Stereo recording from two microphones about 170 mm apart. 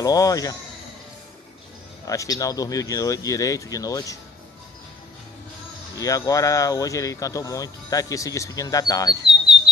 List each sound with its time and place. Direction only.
0.0 s speech: 20° left (ahead or behind)
2.0 s speech: 20° left (ahead or behind)
5.9 s speech: 20° left (ahead or behind)